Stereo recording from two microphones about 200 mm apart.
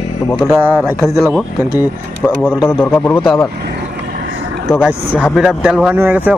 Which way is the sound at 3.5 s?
50° right (ahead or behind).